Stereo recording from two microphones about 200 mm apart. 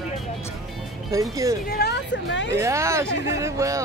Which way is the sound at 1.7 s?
55° left (ahead or behind).